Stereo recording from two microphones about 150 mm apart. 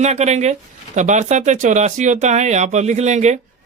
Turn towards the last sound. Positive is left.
turn(degrees=-50)  # may be behind; listen again after turning